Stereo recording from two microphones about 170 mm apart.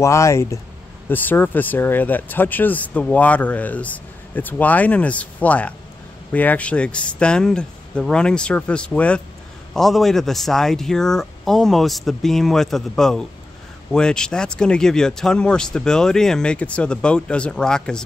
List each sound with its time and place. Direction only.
0.0 s speech: 15° left (ahead or behind)